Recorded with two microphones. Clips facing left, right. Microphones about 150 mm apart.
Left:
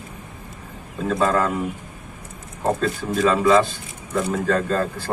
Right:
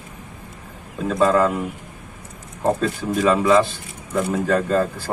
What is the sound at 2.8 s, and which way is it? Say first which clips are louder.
Speech: even; 5° right (ahead or behind).